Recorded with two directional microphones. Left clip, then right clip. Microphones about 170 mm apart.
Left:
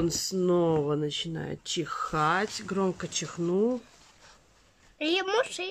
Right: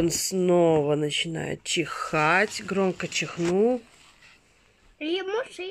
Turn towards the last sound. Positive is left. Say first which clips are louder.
# left 2 dB
turn(degrees=25)  # may be behind; listen again after turning